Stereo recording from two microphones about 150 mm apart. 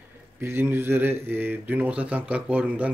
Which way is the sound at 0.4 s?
15° right (ahead or behind).